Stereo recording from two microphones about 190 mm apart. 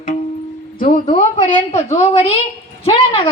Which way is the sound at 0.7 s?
45° left (ahead or behind).